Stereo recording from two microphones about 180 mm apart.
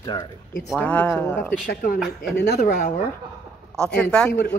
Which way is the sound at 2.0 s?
70° left (ahead or behind).